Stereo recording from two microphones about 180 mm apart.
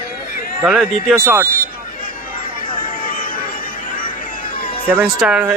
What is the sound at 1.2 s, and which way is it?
Speech, 10° right (ahead or behind).